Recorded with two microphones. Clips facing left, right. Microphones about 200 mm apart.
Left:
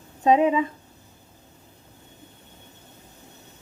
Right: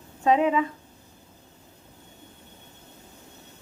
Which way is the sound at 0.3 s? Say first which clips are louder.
Left 2 dB; 20° left (ahead or behind).